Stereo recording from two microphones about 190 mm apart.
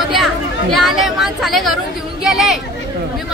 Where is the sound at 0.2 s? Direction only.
Centre (ahead or behind).